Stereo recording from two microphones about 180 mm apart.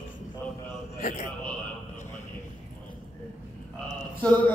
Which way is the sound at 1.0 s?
40° left (ahead or behind).